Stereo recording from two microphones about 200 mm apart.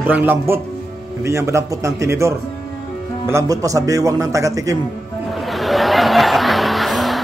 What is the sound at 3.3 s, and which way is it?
Speech, 15° right (ahead or behind).